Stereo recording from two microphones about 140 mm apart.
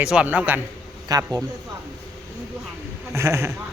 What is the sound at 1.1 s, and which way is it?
Speech, 25° right (ahead or behind).